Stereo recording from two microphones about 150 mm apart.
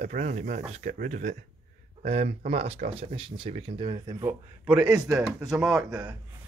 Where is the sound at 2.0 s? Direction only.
40° right (ahead or behind).